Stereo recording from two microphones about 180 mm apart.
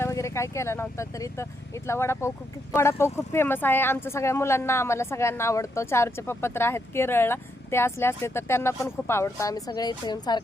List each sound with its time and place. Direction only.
0.0 s speech: 15° left (ahead or behind)